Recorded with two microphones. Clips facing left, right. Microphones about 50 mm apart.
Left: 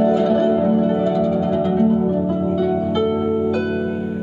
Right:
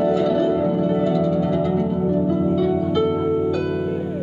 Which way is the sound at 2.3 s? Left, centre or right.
Centre.